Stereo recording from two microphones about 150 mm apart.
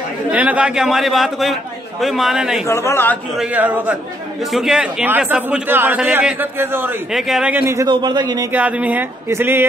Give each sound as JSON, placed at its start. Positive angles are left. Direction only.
{"t": 0.3, "sound": "a man's voice", "side_deg": -10}
{"t": 2.6, "sound": "speech", "side_deg": 15}
{"t": 3.3, "sound": "a man's voice", "side_deg": -10}
{"t": 7.1, "sound": "a man's voice", "side_deg": 0}
{"t": 7.9, "sound": "a man's voice", "side_deg": -30}
{"t": 8.5, "sound": "a man's voice", "side_deg": -10}